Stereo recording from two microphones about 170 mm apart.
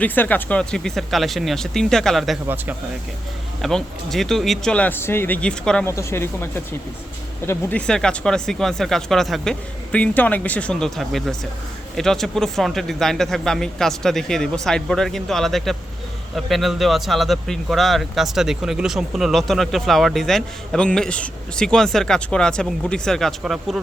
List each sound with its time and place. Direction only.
0.0 s speech: 10° left (ahead or behind)
3.6 s speech: centre (ahead or behind)
5.9 s speech: 15° left (ahead or behind); by 23.8 s centre (ahead or behind)